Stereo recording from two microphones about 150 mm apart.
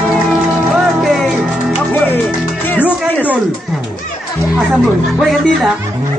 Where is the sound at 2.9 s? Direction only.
10° right (ahead or behind).